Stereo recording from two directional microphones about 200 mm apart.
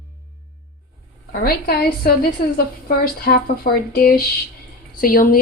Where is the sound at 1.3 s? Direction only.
50° left (ahead or behind).